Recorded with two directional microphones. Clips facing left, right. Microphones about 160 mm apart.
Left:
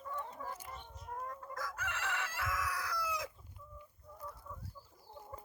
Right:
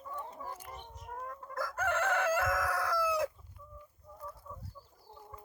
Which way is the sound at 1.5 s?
55° right (ahead or behind).